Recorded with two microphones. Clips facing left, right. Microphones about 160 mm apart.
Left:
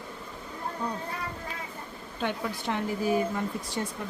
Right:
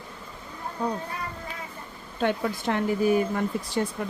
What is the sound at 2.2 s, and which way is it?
Speech, 55° right (ahead or behind).